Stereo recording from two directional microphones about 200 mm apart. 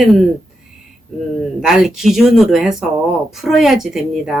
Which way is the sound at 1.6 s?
Centre (ahead or behind).